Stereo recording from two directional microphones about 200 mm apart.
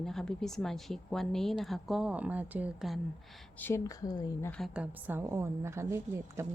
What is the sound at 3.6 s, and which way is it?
Speech, 10° left (ahead or behind).